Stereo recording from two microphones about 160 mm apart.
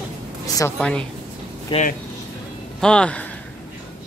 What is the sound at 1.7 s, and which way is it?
Speech, 30° left (ahead or behind).